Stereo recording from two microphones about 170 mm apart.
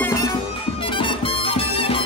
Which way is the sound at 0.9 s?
30° left (ahead or behind).